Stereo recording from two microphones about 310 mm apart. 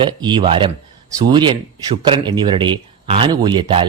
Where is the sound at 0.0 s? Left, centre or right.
Centre.